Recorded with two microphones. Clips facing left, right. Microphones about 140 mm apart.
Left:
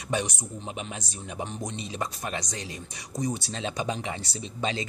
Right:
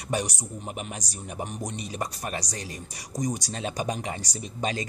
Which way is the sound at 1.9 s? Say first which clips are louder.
Even; 40° right (ahead or behind).